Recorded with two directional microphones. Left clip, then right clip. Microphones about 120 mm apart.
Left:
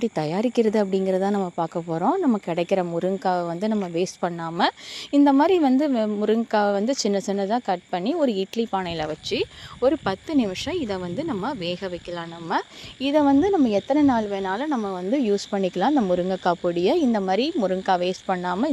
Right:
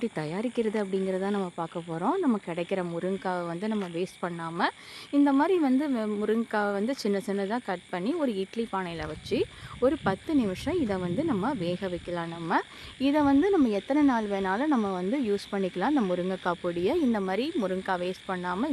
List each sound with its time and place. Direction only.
0.0 s a woman's voice: 35° left (ahead or behind)
2.5 s a woman's voice: 30° left (ahead or behind)
14.8 s speech: 15° left (ahead or behind)
15.1 s a woman's voice: 30° left (ahead or behind)